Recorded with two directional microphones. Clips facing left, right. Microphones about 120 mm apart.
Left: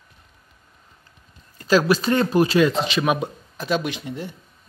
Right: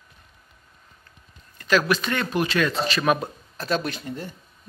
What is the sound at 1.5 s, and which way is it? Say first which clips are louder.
Speech: left 4 dB; 30° left (ahead or behind).